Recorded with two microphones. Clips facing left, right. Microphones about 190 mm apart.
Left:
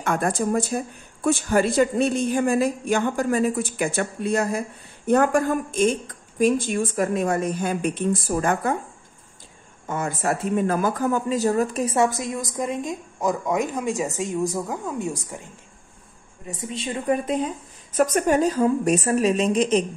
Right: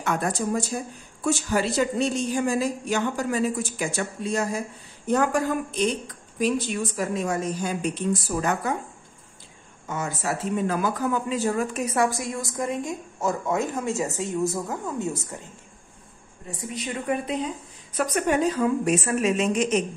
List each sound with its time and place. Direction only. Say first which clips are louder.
0.0 s speech: left 3 dB; 50° left (ahead or behind)
9.8 s speech: left 4 dB; 55° left (ahead or behind); by 17.2 s 25° left (ahead or behind)
17.9 s a woman's voice: left 4 dB; 45° left (ahead or behind)